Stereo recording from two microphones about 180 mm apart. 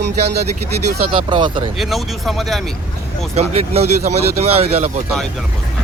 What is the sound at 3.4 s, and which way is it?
Speech, 35° right (ahead or behind).